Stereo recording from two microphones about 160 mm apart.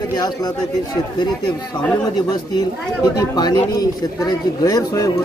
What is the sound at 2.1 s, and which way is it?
Speech, 25° left (ahead or behind).